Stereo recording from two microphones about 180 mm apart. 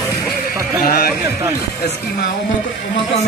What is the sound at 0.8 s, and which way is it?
Speech, 55° left (ahead or behind).